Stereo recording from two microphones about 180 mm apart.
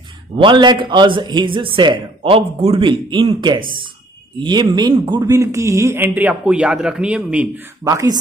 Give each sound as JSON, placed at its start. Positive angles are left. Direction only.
{"t": 0.4, "sound": "a man's voice", "side_deg": -25}